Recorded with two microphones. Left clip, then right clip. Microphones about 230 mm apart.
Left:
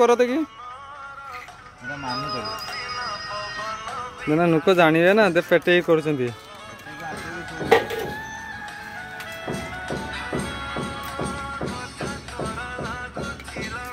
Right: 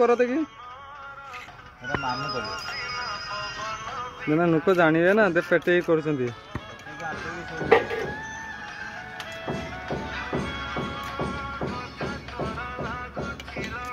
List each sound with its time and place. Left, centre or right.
0.0 s speech: centre
2.1 s music: left
4.3 s speech: centre
7.3 s music: left
9.5 s music: left